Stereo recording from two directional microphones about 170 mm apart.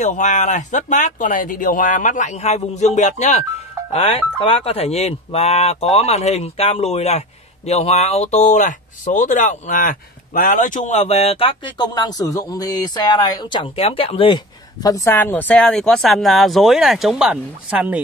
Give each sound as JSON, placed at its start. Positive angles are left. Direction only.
{"t": 0.0, "sound": "speech", "side_deg": 45}